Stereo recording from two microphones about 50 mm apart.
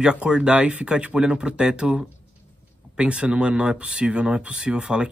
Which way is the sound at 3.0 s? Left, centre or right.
Right.